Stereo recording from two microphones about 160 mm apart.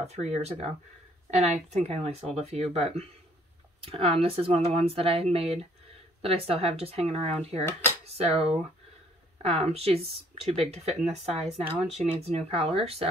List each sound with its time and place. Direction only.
0.0 s speech: 45° right (ahead or behind)
1.7 s speech: 40° right (ahead or behind)